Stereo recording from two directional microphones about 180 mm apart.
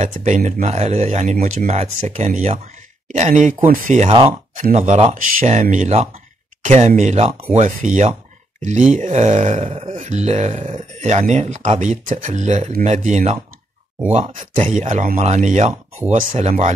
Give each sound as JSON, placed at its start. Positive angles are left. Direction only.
{"t": 0.0, "sound": "speech", "side_deg": -40}
{"t": 4.1, "sound": "speech", "side_deg": -30}